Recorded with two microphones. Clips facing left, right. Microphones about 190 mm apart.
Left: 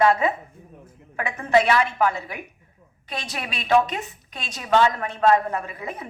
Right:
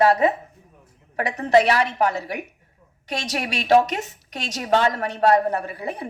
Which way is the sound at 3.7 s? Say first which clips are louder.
Right 2 dB; 45° right (ahead or behind).